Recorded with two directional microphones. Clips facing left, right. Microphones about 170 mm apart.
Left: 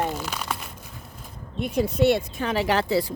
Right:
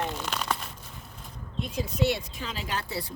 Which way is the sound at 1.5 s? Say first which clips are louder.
Left 7 dB; 65° left (ahead or behind).